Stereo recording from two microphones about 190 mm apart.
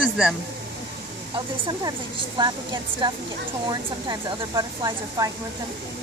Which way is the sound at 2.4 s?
25° right (ahead or behind).